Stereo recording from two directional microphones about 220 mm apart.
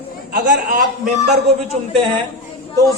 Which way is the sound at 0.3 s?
35° right (ahead or behind).